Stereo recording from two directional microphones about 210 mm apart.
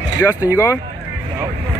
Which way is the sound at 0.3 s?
10° right (ahead or behind).